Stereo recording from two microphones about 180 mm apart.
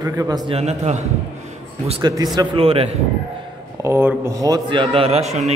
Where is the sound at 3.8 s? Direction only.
15° right (ahead or behind).